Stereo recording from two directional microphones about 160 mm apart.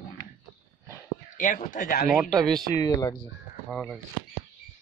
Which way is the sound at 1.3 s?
55° left (ahead or behind).